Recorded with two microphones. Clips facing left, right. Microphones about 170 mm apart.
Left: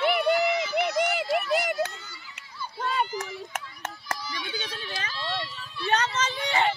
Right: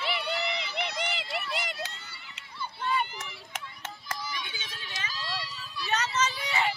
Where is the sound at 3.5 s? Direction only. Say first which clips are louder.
Left 5 dB; 50° left (ahead or behind).